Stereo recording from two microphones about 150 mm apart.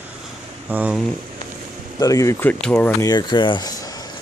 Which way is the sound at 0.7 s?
10° right (ahead or behind).